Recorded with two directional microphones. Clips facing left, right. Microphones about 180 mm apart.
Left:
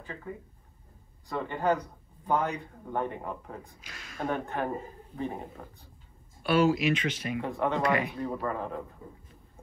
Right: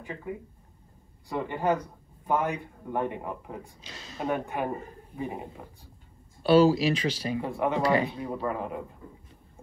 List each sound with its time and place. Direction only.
0.0 s a man's voice: 15° right (ahead or behind)
3.8 s speech: 25° right (ahead or behind)
4.2 s a man's voice: 10° right (ahead or behind)
6.4 s speech: 30° right (ahead or behind)
7.4 s a man's voice: 15° right (ahead or behind)
7.8 s speech: 30° right (ahead or behind)
8.5 s a man's voice: 10° right (ahead or behind)